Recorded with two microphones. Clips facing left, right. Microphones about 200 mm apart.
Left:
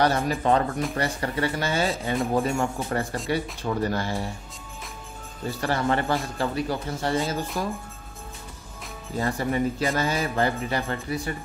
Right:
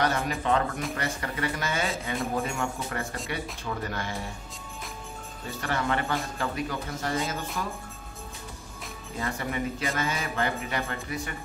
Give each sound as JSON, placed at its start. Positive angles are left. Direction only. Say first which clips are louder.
{"t": 0.0, "sound": "speech", "louder": "left 5 dB", "side_deg": 35}
{"t": 5.6, "sound": "speech", "louder": "left 4 dB", "side_deg": 35}
{"t": 9.2, "sound": "speech", "louder": "left 6 dB", "side_deg": 35}